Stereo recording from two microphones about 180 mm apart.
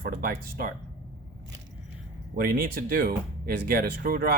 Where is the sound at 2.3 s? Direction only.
55° right (ahead or behind).